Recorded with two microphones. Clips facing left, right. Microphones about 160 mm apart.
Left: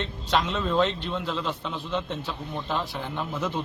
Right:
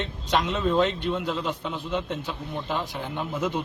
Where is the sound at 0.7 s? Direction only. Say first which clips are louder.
Right 1 dB; 10° right (ahead or behind).